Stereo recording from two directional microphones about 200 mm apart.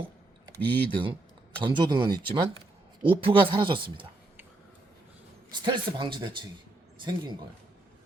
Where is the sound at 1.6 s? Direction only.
25° right (ahead or behind).